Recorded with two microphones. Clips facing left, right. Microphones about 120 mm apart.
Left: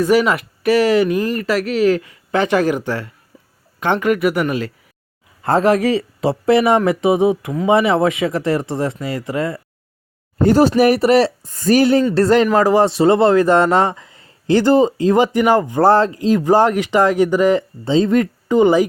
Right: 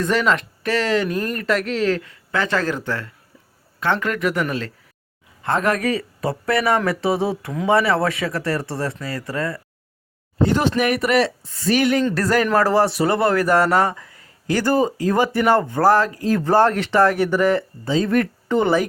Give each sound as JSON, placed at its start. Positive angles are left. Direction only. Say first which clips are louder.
{"t": 0.0, "sound": "speech", "louder": "left 5 dB", "side_deg": 10}
{"t": 5.4, "sound": "speech", "louder": "left 6 dB", "side_deg": 35}
{"t": 10.4, "sound": "speech", "louder": "left 7 dB", "side_deg": 40}
{"t": 11.4, "sound": "speech", "louder": "left 5 dB", "side_deg": 45}
{"t": 11.8, "sound": "speech", "louder": "left 5 dB", "side_deg": 30}
{"t": 15.9, "sound": "speech", "louder": "left 3 dB", "side_deg": 25}